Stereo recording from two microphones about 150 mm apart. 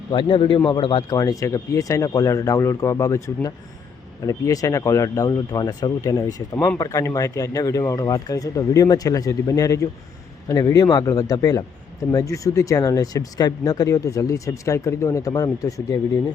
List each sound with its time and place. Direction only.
0.1 s speech: 35° left (ahead or behind)